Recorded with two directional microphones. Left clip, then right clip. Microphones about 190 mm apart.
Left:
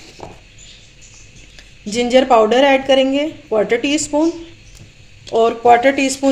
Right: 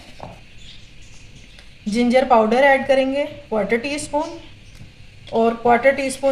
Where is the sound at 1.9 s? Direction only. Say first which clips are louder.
Left 3 dB; 50° left (ahead or behind).